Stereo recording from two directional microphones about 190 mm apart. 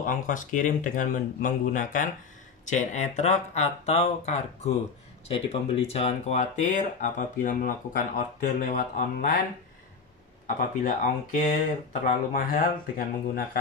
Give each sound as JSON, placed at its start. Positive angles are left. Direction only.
{"t": 0.0, "sound": "speech", "side_deg": 45}
{"t": 10.4, "sound": "speech", "side_deg": 45}